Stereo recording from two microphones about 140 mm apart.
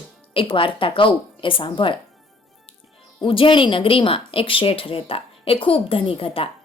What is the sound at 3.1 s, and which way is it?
Speech, 40° left (ahead or behind).